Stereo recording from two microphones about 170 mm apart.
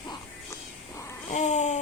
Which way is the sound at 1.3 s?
40° left (ahead or behind).